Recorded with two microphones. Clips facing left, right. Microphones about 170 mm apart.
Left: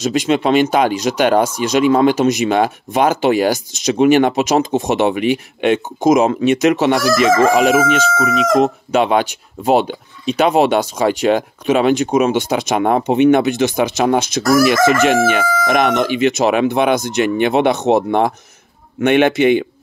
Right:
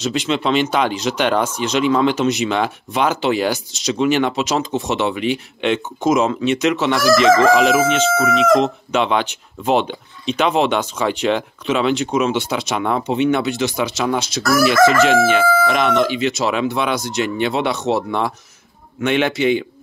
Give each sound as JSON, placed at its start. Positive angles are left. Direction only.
{"t": 0.0, "sound": "speech", "side_deg": 45}
{"t": 6.9, "sound": "chicken", "side_deg": 10}
{"t": 7.7, "sound": "a man's voice", "side_deg": 45}